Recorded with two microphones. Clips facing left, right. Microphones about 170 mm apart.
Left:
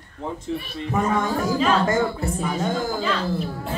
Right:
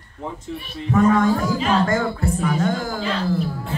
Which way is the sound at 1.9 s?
20° left (ahead or behind).